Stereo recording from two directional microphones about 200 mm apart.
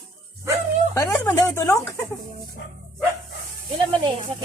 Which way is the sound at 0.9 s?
15° left (ahead or behind).